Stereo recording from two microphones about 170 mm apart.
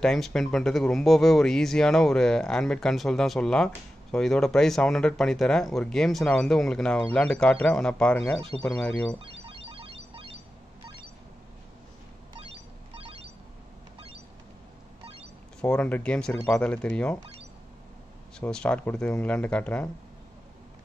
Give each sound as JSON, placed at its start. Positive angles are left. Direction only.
{"t": 0.0, "sound": "speech", "side_deg": 5}
{"t": 9.2, "sound": "music", "side_deg": -30}
{"t": 12.9, "sound": "a sound", "side_deg": -35}
{"t": 15.6, "sound": "speech", "side_deg": 10}
{"t": 18.4, "sound": "speech", "side_deg": 5}